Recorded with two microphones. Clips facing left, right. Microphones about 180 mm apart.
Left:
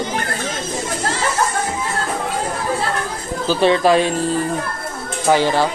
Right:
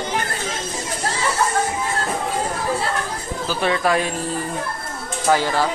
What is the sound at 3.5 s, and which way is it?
Speech, 30° left (ahead or behind).